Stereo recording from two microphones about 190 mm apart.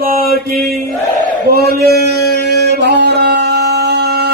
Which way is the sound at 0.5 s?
Centre (ahead or behind).